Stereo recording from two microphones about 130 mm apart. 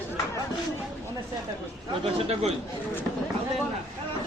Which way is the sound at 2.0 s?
50° right (ahead or behind).